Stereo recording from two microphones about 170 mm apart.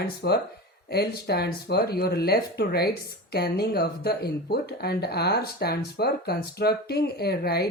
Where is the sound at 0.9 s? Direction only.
70° left (ahead or behind).